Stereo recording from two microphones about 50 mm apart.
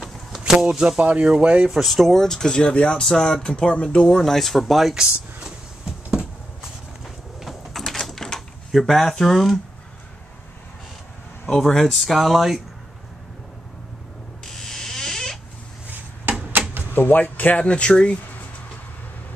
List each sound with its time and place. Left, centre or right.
0.4 s speech: centre
1.7 s speech: centre; by 4.1 s left
4.1 s speech: centre
5.4 s a sound: centre
7.3 s door: centre
11.4 s speech: centre
14.4 s rodents: centre
15.9 s a sound: right
16.9 s speech: left